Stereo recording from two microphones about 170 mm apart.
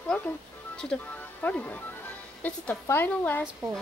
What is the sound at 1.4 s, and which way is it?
Speech, 10° left (ahead or behind).